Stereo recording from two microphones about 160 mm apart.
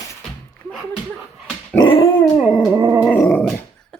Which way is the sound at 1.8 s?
35° left (ahead or behind).